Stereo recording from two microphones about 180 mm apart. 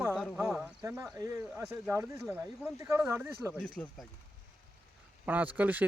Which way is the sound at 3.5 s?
10° left (ahead or behind).